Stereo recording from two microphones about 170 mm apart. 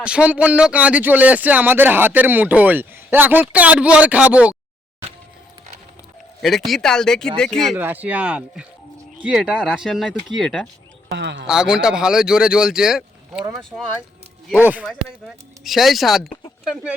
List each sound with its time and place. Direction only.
0.0 s speech: 5° right (ahead or behind)
6.4 s speech: centre (ahead or behind)
7.8 s speech: 10° right (ahead or behind)
11.1 s speech: 90° right
11.4 s speech: 5° right (ahead or behind)
14.6 s speech: 10° right (ahead or behind)